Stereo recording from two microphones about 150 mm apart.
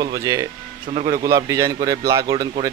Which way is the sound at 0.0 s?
25° right (ahead or behind).